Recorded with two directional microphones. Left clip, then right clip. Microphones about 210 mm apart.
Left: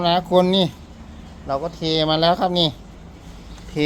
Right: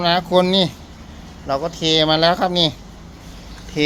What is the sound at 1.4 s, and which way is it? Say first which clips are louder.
Speech: right 3 dB; centre (ahead or behind).